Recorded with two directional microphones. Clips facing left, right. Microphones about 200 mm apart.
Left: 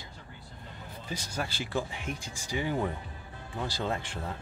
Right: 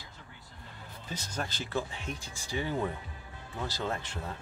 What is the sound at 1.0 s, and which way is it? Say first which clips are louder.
Speech: left 2 dB; 10° left (ahead or behind).